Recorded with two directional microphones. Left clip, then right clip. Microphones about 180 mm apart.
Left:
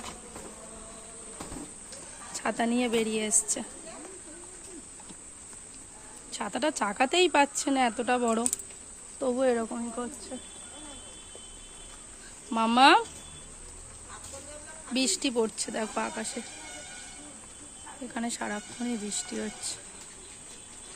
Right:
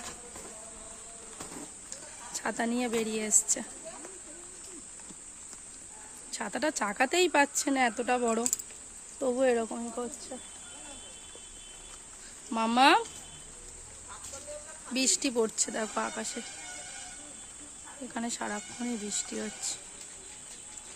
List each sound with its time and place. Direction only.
2.3 s speech: 10° right (ahead or behind)
6.3 s speech: 20° right (ahead or behind)
12.5 s speech: 15° right (ahead or behind)
14.9 s speech: 15° right (ahead or behind)
18.1 s speech: 20° right (ahead or behind)